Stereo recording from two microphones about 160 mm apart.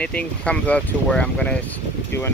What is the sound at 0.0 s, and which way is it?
Speech, 5° left (ahead or behind).